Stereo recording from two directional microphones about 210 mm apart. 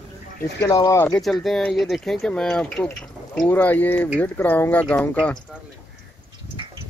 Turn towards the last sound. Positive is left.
turn(degrees=5)  # may be behind; listen again after turning